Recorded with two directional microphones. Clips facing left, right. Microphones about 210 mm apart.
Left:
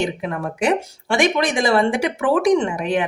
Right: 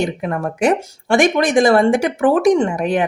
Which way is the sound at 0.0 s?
45° right (ahead or behind).